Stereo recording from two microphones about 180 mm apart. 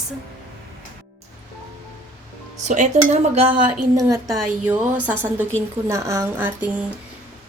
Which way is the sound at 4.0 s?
20° right (ahead or behind).